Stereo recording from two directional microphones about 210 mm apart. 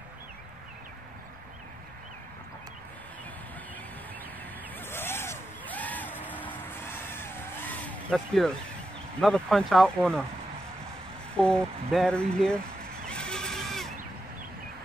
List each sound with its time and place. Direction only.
4.7 s a sound: 10° left (ahead or behind)
9.2 s speech: 5° left (ahead or behind)
11.3 s speech: 5° left (ahead or behind)
13.0 s neigh: 5° left (ahead or behind)